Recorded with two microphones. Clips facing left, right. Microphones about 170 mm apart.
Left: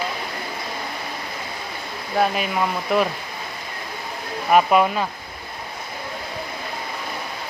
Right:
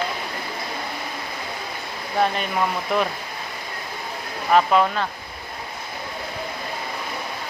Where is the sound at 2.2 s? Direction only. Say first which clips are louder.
Left 1 dB; 5° left (ahead or behind).